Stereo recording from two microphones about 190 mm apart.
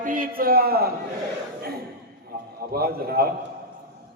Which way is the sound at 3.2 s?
55° right (ahead or behind).